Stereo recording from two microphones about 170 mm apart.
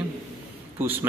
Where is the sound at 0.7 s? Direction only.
10° right (ahead or behind).